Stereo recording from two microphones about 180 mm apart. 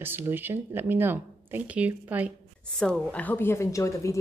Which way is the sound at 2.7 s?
5° left (ahead or behind).